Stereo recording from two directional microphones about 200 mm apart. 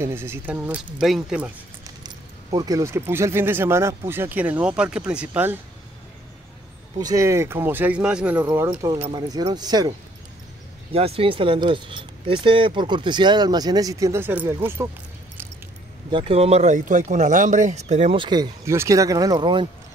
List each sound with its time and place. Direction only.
0.0 s speech: 10° right (ahead or behind)
2.0 s speech: 20° right (ahead or behind)
7.0 s speech: 15° right (ahead or behind)
8.5 s speech: 20° right (ahead or behind)
8.9 s speech: 30° right (ahead or behind)
9.3 s speech: 20° right (ahead or behind)
16.1 s speech: 25° right (ahead or behind)